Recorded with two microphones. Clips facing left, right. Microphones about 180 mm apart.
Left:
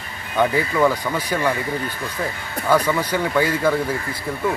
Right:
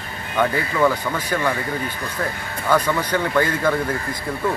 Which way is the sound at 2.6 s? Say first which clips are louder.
Left 1 dB; 10° left (ahead or behind).